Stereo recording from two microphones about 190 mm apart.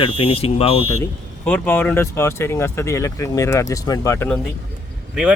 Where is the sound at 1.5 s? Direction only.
10° left (ahead or behind).